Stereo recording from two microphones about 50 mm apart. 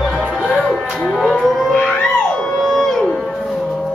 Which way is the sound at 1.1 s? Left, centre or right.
Centre.